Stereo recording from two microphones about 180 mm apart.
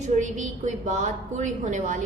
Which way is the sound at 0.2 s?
45° right (ahead or behind).